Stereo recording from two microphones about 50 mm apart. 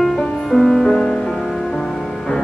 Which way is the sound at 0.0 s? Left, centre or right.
Centre.